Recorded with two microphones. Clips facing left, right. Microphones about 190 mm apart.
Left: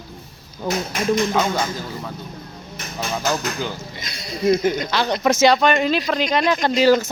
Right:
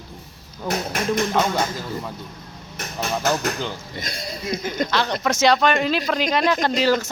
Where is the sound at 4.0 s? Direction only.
50° right (ahead or behind).